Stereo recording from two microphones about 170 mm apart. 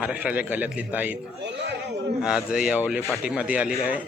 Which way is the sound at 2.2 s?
5° right (ahead or behind).